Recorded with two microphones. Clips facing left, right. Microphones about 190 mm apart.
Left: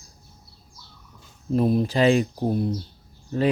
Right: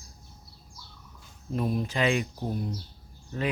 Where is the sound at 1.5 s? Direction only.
35° left (ahead or behind).